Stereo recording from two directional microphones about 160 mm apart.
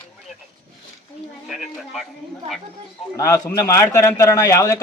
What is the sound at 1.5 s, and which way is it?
Speech, centre (ahead or behind).